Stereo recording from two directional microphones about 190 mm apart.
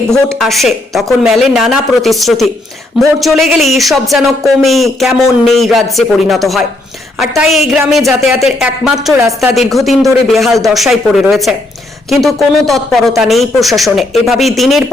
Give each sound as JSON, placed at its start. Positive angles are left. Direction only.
{"t": 0.1, "sound": "speech", "side_deg": 0}